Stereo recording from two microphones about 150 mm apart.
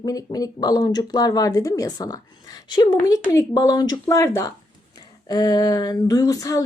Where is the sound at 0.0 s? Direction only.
25° left (ahead or behind).